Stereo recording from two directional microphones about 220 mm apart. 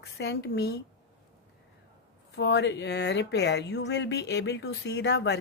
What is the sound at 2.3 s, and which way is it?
Speech, 50° left (ahead or behind).